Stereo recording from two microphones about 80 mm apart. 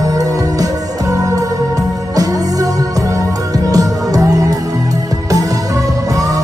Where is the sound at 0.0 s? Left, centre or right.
Right.